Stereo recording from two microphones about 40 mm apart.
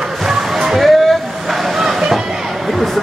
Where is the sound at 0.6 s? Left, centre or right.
Centre.